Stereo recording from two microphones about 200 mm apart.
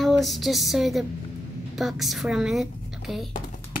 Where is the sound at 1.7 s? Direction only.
Centre (ahead or behind).